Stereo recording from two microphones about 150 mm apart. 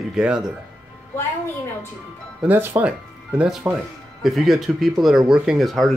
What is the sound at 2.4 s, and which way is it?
Speech, 15° right (ahead or behind).